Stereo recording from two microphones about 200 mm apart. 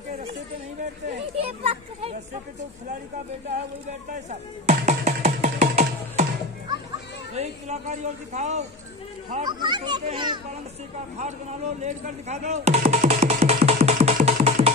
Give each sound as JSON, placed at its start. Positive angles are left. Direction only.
{"t": 1.3, "sound": "children playing", "side_deg": -30}
{"t": 4.1, "sound": "speech", "side_deg": -35}
{"t": 7.3, "sound": "speech", "side_deg": -35}
{"t": 9.4, "sound": "a child's voice", "side_deg": -20}
{"t": 11.8, "sound": "music", "side_deg": -35}